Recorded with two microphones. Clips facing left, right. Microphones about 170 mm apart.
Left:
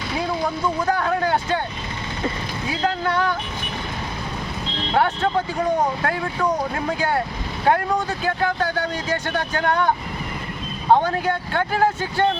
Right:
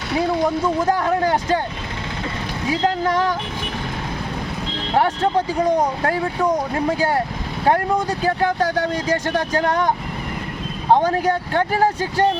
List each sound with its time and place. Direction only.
8.2 s speech: 40° right (ahead or behind)
11.0 s speech: 40° right (ahead or behind)